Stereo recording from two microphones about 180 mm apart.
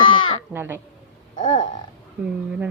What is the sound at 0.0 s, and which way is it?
Crow, 25° left (ahead or behind).